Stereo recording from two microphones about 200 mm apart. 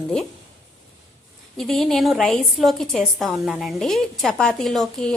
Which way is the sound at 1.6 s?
Centre (ahead or behind).